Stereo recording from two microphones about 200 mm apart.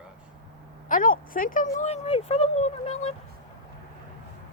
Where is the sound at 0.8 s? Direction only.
45° left (ahead or behind).